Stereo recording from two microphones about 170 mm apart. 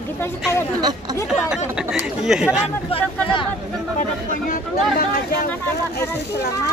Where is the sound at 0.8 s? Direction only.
25° right (ahead or behind).